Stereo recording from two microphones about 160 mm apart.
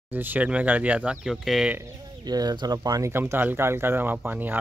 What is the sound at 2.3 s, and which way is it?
Speech, 25° right (ahead or behind).